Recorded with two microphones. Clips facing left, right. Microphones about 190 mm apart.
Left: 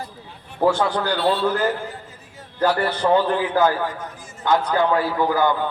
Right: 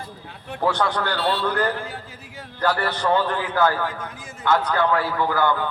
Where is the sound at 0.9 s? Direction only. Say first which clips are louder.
Left 3 dB; 15° left (ahead or behind).